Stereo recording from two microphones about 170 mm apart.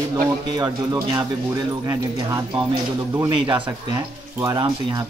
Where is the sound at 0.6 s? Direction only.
25° right (ahead or behind).